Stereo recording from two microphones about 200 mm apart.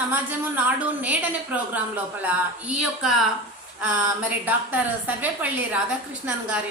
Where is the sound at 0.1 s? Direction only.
10° right (ahead or behind).